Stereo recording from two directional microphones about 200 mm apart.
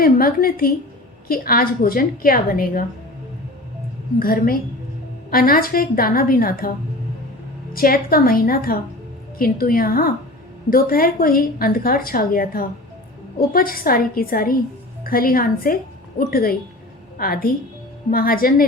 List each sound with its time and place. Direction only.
0.0 s a woman's voice: 45° left (ahead or behind)
4.2 s a woman's voice: 45° left (ahead or behind)